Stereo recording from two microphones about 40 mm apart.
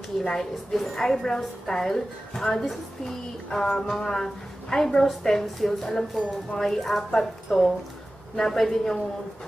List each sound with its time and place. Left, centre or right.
0.2 s a woman's voice: centre
3.5 s music: centre
3.9 s a woman's voice: centre